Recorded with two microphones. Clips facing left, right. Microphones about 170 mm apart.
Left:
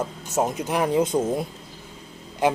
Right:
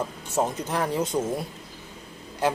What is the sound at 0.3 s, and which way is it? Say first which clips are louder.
Speech: left 3 dB; 15° left (ahead or behind).